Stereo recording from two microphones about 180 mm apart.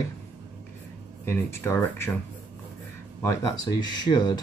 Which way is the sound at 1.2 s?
15° left (ahead or behind).